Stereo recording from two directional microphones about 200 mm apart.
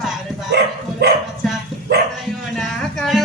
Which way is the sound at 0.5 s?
55° right (ahead or behind).